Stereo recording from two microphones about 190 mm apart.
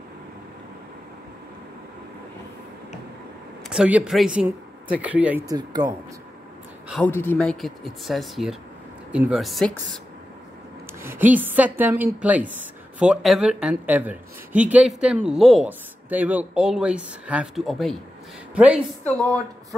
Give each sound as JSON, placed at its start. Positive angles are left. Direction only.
{"t": 3.6, "sound": "speech", "side_deg": -5}
{"t": 5.4, "sound": "speech", "side_deg": -20}
{"t": 6.9, "sound": "speech", "side_deg": 10}
{"t": 11.0, "sound": "a woman's voice", "side_deg": -10}
{"t": 19.0, "sound": "a woman's voice", "side_deg": 10}